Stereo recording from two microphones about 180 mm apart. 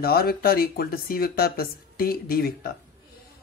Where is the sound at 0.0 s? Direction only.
60° left (ahead or behind).